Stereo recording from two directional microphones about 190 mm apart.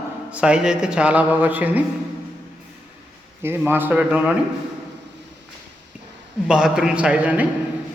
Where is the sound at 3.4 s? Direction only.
10° right (ahead or behind).